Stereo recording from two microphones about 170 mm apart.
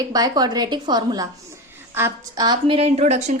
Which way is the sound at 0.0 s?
20° right (ahead or behind).